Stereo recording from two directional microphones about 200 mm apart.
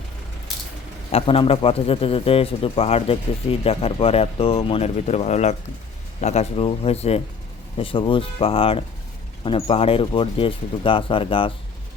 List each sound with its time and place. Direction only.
1.1 s a man's voice: 30° left (ahead or behind)